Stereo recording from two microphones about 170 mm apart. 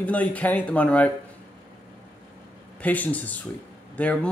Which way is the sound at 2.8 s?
10° left (ahead or behind).